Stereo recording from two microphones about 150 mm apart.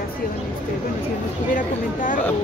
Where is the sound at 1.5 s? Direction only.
60° left (ahead or behind).